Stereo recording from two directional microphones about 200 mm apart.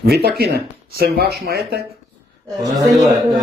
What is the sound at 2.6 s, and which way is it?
Speech, 15° right (ahead or behind).